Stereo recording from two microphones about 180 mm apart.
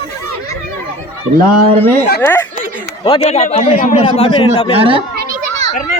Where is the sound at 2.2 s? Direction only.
15° left (ahead or behind).